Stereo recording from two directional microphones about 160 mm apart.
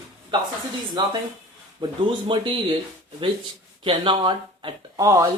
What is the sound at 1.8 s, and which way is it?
Speech, 30° right (ahead or behind).